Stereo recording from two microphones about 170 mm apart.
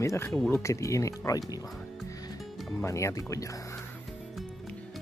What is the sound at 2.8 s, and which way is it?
Speech, 15° left (ahead or behind).